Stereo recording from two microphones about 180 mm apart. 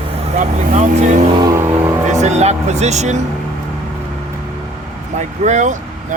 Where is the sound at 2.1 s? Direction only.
40° right (ahead or behind).